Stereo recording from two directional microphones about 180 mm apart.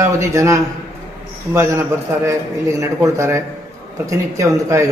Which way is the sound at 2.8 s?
15° right (ahead or behind).